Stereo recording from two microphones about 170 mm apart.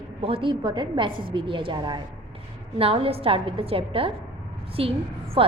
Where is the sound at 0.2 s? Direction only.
35° right (ahead or behind).